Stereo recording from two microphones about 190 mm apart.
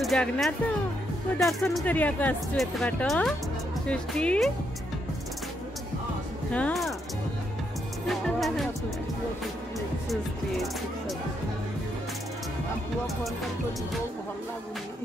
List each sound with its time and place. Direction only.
0.0 s speech: centre (ahead or behind)
1.8 s speech: 10° left (ahead or behind)
6.5 s speech: 5° left (ahead or behind)
8.1 s speech: centre (ahead or behind)